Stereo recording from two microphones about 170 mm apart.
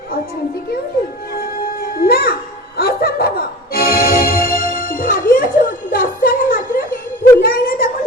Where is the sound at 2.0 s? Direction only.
65° left (ahead or behind).